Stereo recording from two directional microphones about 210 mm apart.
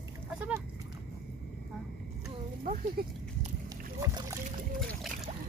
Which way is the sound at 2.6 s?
40° right (ahead or behind).